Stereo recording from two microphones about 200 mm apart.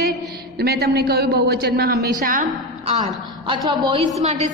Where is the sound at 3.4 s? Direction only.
20° right (ahead or behind).